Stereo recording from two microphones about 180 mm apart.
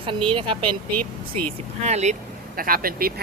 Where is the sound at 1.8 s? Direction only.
40° right (ahead or behind).